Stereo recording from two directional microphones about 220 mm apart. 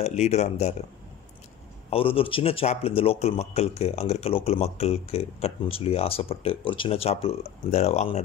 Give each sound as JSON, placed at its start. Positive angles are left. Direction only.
{"t": 0.0, "sound": "speech", "side_deg": 30}
{"t": 1.9, "sound": "speech", "side_deg": 25}